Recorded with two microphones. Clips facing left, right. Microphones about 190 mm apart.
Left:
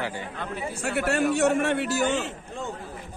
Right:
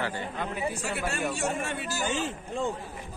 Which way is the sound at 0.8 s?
60° left (ahead or behind).